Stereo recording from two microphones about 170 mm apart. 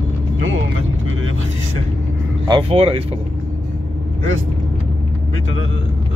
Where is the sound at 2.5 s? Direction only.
35° right (ahead or behind).